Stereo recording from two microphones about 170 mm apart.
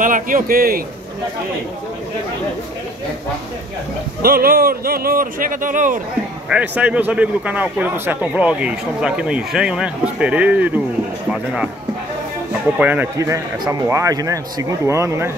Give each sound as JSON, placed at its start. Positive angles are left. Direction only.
{"t": 0.0, "sound": "speech", "side_deg": -50}
{"t": 4.2, "sound": "speech", "side_deg": -65}
{"t": 6.5, "sound": "a man's voice", "side_deg": -10}
{"t": 12.7, "sound": "a man's voice", "side_deg": -10}